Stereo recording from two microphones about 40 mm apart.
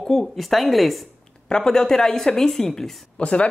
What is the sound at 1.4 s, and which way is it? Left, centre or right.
Speech, left.